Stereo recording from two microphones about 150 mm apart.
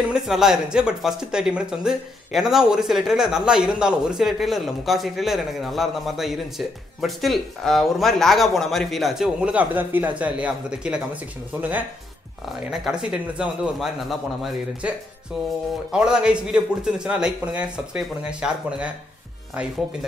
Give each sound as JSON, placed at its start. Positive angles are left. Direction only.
{"t": 0.1, "sound": "speech", "side_deg": -5}
{"t": 12.7, "sound": "speech", "side_deg": -5}